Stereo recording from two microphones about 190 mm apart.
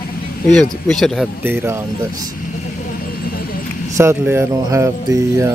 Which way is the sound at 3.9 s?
15° right (ahead or behind).